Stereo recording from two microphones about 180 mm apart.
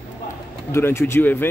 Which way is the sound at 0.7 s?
15° left (ahead or behind).